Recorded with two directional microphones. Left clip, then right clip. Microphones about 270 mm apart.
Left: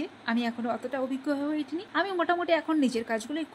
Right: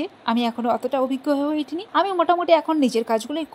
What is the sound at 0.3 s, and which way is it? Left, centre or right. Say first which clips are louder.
Speech: right 9 dB; centre.